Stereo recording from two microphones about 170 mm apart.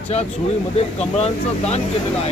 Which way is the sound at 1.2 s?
40° left (ahead or behind).